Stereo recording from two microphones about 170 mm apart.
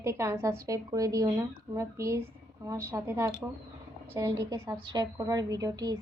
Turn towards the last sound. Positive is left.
turn(degrees=-20)  # may be behind; listen again after turning